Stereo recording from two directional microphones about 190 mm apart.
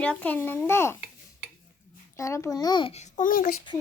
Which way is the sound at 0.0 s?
5° left (ahead or behind).